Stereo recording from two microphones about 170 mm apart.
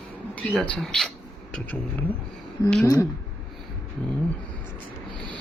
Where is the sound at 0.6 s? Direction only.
5° left (ahead or behind).